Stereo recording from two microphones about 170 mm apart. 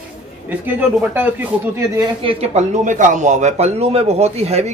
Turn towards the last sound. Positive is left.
turn(degrees=-40)  # may be behind; listen again after turning